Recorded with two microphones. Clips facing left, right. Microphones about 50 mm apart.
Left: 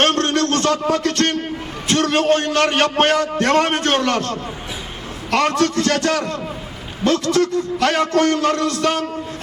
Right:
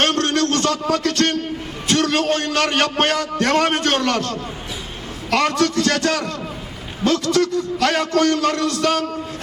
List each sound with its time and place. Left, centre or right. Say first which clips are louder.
0.0 s a sound: left 1 dB; left
1.9 s a man's voice: left 2 dB; left
5.5 s a man's voice: left 1 dB; left